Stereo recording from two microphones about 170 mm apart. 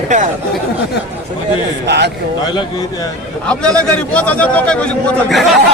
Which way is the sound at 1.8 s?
80° right.